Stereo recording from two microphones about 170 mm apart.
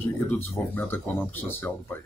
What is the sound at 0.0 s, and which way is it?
Speech, 10° left (ahead or behind).